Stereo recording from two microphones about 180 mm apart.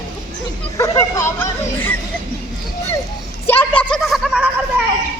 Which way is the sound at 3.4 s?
10° left (ahead or behind).